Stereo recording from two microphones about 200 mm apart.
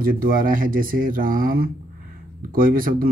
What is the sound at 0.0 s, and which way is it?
Speech, 45° right (ahead or behind).